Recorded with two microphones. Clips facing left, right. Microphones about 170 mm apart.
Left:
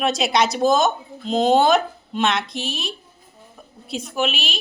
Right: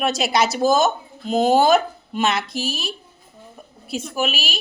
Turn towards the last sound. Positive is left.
turn(degrees=-5)  # may be behind; listen again after turning